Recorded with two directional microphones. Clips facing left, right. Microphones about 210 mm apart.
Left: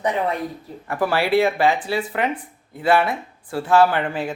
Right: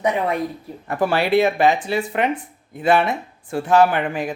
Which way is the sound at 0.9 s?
20° right (ahead or behind).